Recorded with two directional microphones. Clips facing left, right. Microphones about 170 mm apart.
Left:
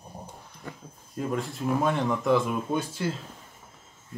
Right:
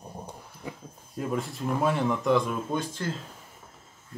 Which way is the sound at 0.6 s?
5° right (ahead or behind).